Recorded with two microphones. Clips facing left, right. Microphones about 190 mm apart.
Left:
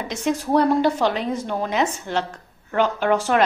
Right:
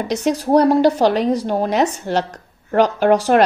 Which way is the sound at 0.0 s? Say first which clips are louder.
Right 5 dB; 35° right (ahead or behind).